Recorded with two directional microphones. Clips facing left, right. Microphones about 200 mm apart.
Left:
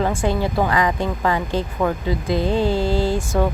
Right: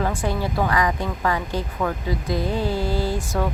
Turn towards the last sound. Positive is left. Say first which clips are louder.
# left 4 dB
turn(degrees=25)  # may be behind; listen again after turning